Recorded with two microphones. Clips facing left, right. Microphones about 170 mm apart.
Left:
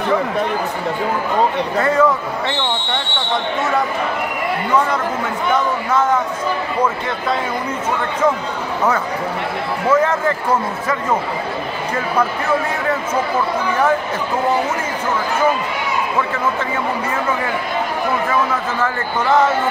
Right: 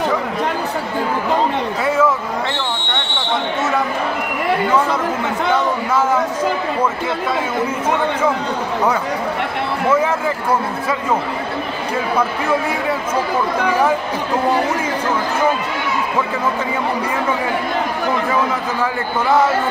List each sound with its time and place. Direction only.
1.8 s speech: 5° right (ahead or behind)
9.8 s speech: 10° right (ahead or behind)
18.8 s speech: 10° right (ahead or behind)